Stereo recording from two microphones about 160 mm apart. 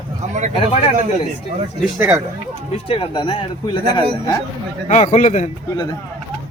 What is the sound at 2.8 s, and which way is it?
Speech, 35° left (ahead or behind).